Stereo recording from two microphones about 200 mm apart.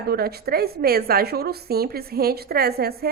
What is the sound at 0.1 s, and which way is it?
A woman's voice, 50° right (ahead or behind).